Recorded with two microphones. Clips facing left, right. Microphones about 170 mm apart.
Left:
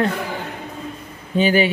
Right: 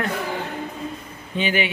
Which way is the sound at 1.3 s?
40° left (ahead or behind).